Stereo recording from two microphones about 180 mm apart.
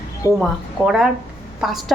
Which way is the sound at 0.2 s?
15° left (ahead or behind).